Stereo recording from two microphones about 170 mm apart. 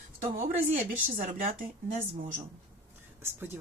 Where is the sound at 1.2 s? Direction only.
50° right (ahead or behind).